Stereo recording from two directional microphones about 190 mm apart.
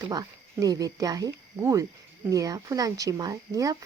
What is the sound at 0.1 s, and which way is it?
A woman's voice, 20° right (ahead or behind).